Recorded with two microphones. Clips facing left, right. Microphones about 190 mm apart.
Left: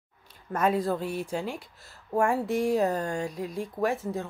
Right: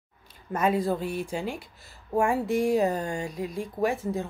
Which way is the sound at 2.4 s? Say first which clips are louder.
Right 2 dB; 5° left (ahead or behind).